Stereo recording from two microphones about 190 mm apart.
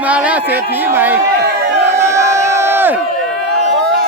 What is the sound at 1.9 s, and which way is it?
Crowd, 15° right (ahead or behind).